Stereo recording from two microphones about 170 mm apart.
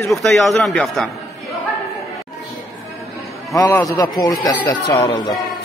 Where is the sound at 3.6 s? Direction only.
15° left (ahead or behind).